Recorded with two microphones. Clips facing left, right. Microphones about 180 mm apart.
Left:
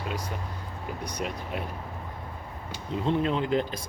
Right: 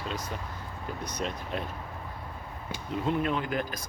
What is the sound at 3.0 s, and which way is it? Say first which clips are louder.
Speech: left 3 dB; 25° left (ahead or behind).